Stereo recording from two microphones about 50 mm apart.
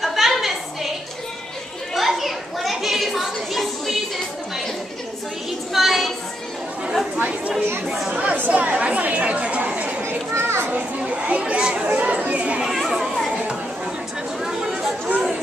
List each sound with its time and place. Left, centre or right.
0.0 s a sound: centre
2.0 s a sound: centre
5.7 s a sound: centre
7.2 s chatter: right
8.1 s speech: right
8.5 s chatter: right
10.0 s children playing: right
10.7 s chatter: right
12.6 s children playing: centre
14.7 s chatter: centre